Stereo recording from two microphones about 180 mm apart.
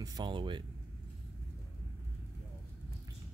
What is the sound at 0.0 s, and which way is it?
Speech, 25° right (ahead or behind).